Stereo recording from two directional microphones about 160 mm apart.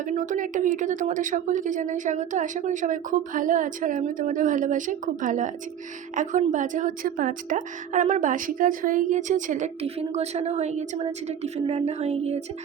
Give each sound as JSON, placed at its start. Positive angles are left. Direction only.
{"t": 0.0, "sound": "a woman's voice", "side_deg": -55}